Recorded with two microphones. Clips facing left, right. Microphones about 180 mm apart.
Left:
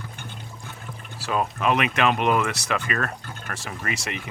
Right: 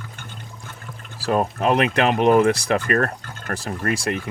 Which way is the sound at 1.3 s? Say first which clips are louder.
Right 4 dB; 40° right (ahead or behind).